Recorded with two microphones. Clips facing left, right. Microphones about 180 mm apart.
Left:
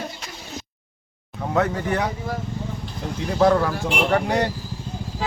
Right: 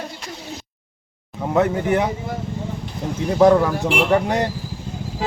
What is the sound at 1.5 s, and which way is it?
Speech, 20° right (ahead or behind).